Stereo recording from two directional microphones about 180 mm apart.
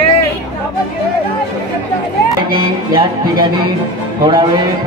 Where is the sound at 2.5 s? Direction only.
25° right (ahead or behind).